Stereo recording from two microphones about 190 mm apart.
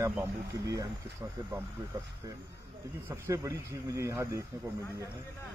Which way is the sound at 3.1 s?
15° right (ahead or behind).